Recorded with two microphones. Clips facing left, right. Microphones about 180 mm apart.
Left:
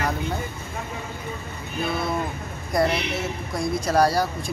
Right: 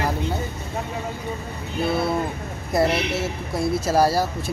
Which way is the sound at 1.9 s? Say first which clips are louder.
Right 4 dB; 30° right (ahead or behind).